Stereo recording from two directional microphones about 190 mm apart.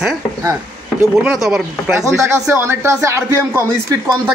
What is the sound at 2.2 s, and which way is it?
A man's voice, 15° right (ahead or behind).